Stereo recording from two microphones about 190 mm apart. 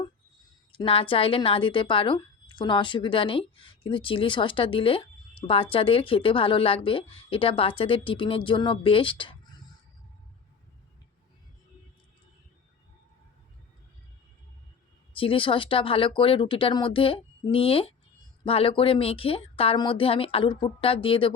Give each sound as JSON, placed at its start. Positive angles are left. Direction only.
{"t": 0.7, "sound": "speech", "side_deg": 30}
{"t": 15.1, "sound": "speech", "side_deg": 25}